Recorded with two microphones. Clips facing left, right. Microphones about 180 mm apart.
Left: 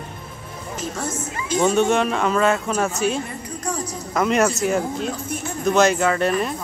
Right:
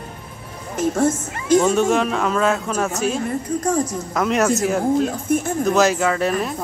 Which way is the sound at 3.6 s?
50° right (ahead or behind).